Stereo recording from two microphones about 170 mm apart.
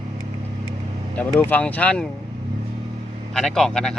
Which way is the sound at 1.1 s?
10° left (ahead or behind).